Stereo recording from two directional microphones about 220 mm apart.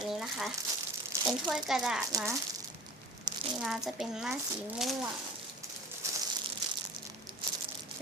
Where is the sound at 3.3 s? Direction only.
20° right (ahead or behind).